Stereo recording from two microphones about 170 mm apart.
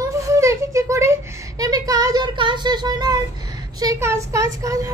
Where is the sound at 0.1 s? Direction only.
20° right (ahead or behind).